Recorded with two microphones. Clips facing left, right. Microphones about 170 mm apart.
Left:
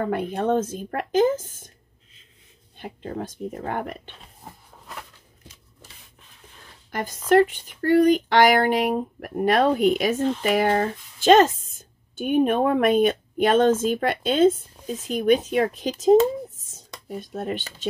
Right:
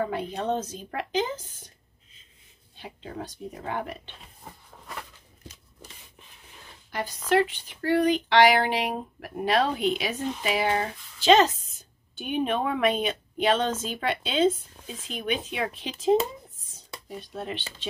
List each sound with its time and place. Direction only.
0.0 s speech: 55° left (ahead or behind)
2.8 s speech: 50° left (ahead or behind)
6.9 s a woman's voice: 50° left (ahead or behind)